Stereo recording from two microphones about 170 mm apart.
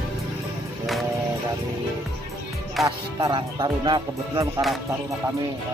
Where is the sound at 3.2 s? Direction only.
30° right (ahead or behind).